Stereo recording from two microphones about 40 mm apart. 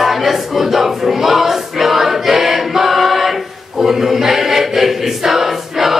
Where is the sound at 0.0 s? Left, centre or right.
Centre.